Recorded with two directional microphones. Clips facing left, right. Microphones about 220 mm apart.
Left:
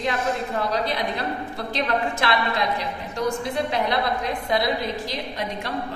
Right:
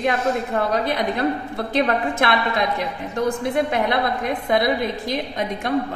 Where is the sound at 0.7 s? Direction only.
50° right (ahead or behind).